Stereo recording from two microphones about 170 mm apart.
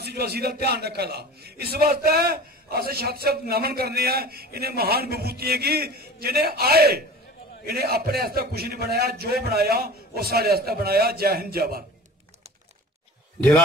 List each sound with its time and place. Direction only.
0.0 s a man's voice: 70° right (ahead or behind)